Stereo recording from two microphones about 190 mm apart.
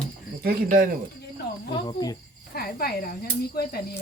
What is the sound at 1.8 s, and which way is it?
Speech, 20° left (ahead or behind).